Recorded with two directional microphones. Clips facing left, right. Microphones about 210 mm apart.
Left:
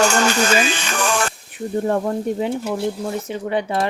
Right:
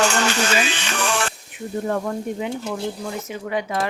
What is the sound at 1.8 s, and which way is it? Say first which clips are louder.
Speech: left 4 dB; 35° left (ahead or behind).